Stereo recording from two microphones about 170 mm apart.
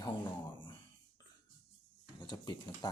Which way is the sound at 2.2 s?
25° left (ahead or behind).